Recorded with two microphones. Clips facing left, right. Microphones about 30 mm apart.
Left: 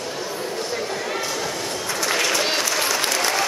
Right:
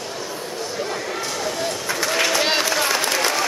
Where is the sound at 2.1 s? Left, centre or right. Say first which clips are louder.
Right 3 dB; centre.